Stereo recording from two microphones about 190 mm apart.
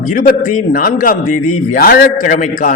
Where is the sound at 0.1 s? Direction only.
45° left (ahead or behind).